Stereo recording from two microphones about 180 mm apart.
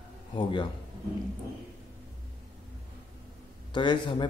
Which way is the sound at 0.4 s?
30° left (ahead or behind).